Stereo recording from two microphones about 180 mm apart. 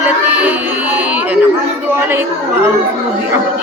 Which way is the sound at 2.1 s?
15° right (ahead or behind).